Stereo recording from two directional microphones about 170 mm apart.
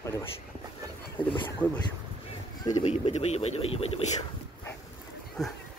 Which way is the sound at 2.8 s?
35° left (ahead or behind).